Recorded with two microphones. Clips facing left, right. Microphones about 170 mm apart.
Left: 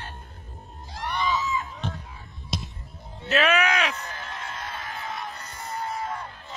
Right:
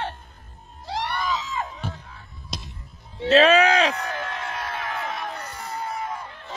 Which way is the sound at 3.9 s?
65° right (ahead or behind).